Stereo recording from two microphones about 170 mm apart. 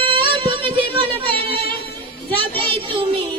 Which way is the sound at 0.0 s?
30° right (ahead or behind).